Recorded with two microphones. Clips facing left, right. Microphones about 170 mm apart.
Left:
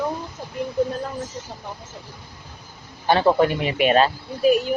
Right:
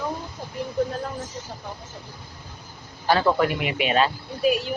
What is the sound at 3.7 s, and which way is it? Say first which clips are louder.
Speech: left 5 dB; 45° left (ahead or behind).